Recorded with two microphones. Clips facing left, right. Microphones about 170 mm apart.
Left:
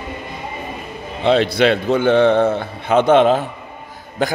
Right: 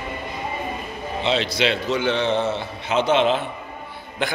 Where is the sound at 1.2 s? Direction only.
55° left (ahead or behind).